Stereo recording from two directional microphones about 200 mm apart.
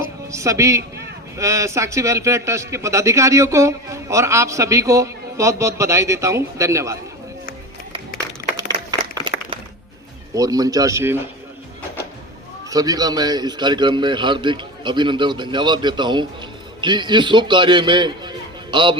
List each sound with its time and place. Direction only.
0.3 s a man's voice: 15° right (ahead or behind)
8.9 s applause: 20° right (ahead or behind)
10.3 s a man's voice: 20° right (ahead or behind)
12.7 s a man's voice: 20° right (ahead or behind)